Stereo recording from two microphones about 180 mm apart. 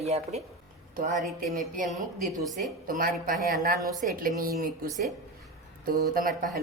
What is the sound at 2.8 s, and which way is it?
Speech, 50° right (ahead or behind).